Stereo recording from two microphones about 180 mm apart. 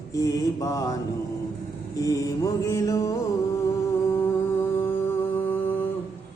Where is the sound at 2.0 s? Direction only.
20° left (ahead or behind).